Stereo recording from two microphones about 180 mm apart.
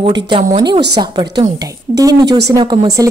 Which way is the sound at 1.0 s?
25° right (ahead or behind).